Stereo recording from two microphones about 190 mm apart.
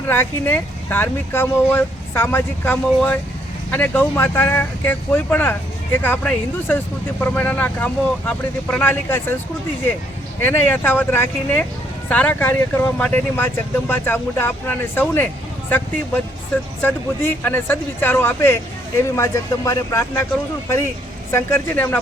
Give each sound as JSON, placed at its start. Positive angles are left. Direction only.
{"t": 0.1, "sound": "speech", "side_deg": 10}
{"t": 10.4, "sound": "speech", "side_deg": 10}
{"t": 16.8, "sound": "speech", "side_deg": 10}
{"t": 21.3, "sound": "speech", "side_deg": 15}